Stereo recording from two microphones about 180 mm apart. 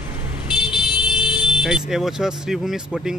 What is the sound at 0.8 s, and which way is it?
Speech, 5° right (ahead or behind).